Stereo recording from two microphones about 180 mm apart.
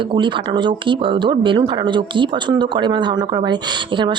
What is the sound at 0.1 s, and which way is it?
Speech, 25° right (ahead or behind).